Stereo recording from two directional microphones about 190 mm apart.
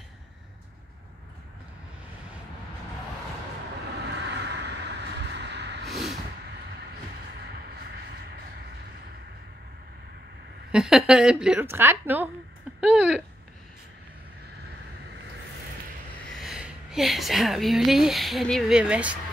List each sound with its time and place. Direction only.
4.0 s a sound: 65° right (ahead or behind)
5.9 s vehicle: centre (ahead or behind)
10.7 s a woman's voice: centre (ahead or behind)
16.3 s a woman's voice: centre (ahead or behind)